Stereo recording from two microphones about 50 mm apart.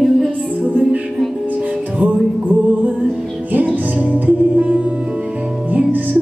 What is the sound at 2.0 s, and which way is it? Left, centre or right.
Music, right.